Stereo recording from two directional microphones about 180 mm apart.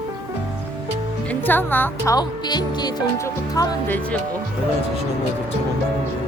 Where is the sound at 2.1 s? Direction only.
25° left (ahead or behind).